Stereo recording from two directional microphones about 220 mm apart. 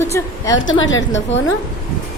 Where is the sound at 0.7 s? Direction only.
60° left (ahead or behind).